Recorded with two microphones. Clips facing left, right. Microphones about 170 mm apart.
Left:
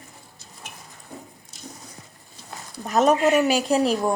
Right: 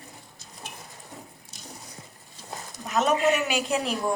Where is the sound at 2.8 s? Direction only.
40° left (ahead or behind).